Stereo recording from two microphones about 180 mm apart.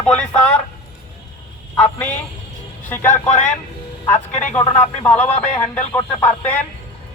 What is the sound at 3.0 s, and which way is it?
Speech, 45° left (ahead or behind).